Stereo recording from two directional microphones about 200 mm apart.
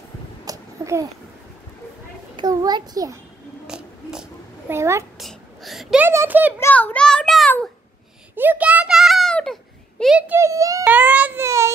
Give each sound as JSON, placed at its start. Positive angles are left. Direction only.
{"t": 0.5, "sound": "babbling", "side_deg": -15}
{"t": 2.3, "sound": "a child's voice", "side_deg": -20}
{"t": 3.6, "sound": "a sound", "side_deg": -5}
{"t": 5.2, "sound": "a sound", "side_deg": 0}
{"t": 6.6, "sound": "a child's voice", "side_deg": 10}
{"t": 8.4, "sound": "a child's voice", "side_deg": -10}